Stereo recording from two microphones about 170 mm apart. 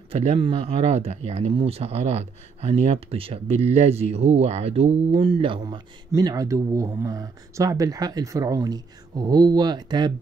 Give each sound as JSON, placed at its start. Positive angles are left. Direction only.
{"t": 0.1, "sound": "speech", "side_deg": -35}